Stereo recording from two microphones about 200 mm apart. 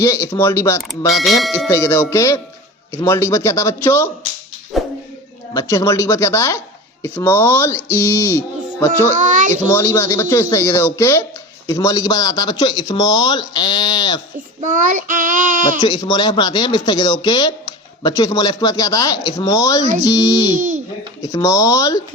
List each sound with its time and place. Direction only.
0.0 s a man's voice: 15° left (ahead or behind)
0.8 s speech: centre (ahead or behind)
1.7 s a man's voice: 15° left (ahead or behind)
4.7 s dog: centre (ahead or behind)
5.5 s a man's voice: 15° left (ahead or behind)
7.9 s a sound: 15° left (ahead or behind)
9.1 s child singing: 40° right (ahead or behind)
9.6 s a man's voice: 10° left (ahead or behind)
14.6 s child singing: 40° right (ahead or behind)
15.8 s a man's voice: 20° left (ahead or behind)
20.6 s child singing: 40° right (ahead or behind)
21.2 s a man's voice: 15° left (ahead or behind)